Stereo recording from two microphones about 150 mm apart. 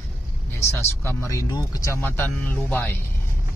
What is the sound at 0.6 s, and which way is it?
Speech, 20° left (ahead or behind).